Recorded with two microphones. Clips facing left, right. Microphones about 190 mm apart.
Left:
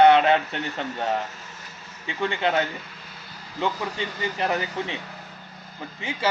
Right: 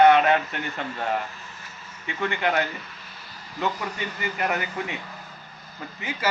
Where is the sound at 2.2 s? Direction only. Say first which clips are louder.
Left 1 dB; 25° left (ahead or behind).